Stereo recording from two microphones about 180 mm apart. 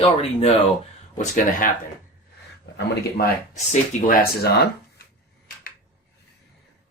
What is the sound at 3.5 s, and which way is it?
Speech, 40° left (ahead or behind).